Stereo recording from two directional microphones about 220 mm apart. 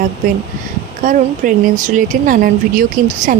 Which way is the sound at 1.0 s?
35° right (ahead or behind).